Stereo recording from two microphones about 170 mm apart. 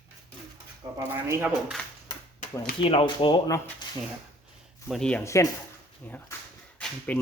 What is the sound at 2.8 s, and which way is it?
Speech, 30° left (ahead or behind).